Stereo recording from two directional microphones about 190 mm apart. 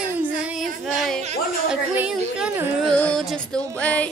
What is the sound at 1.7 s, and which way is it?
Speech, 5° right (ahead or behind).